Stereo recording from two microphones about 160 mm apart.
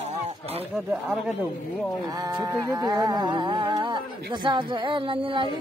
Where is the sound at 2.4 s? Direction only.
20° right (ahead or behind).